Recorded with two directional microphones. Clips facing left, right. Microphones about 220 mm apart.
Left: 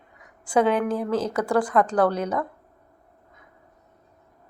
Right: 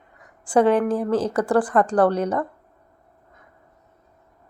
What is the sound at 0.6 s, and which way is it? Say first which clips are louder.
A woman's voice: right 4 dB; 30° right (ahead or behind).